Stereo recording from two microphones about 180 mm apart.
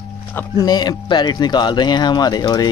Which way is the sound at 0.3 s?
10° left (ahead or behind).